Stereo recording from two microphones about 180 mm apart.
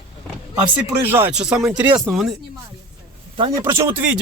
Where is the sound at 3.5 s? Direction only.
15° right (ahead or behind).